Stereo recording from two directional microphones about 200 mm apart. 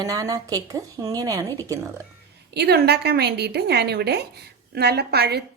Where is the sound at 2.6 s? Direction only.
55° right (ahead or behind).